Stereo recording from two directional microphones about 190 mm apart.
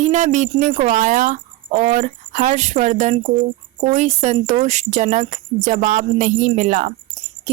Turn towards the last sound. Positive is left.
turn(degrees=-45)  # may be behind; listen again after turning